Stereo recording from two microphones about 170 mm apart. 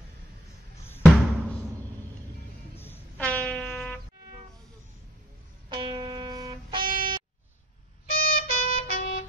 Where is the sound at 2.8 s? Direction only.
10° left (ahead or behind).